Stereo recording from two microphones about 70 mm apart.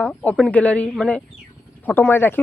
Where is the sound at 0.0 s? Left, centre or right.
Centre.